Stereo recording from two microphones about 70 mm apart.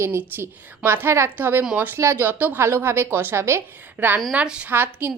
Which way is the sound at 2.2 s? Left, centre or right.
Right.